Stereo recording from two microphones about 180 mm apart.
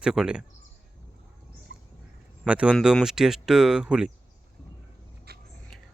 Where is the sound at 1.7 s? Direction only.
65° right (ahead or behind).